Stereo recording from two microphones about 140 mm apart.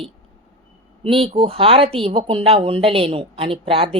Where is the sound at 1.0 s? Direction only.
40° right (ahead or behind).